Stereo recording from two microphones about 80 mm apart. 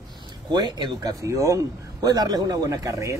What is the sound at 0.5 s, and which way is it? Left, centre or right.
Speech, right.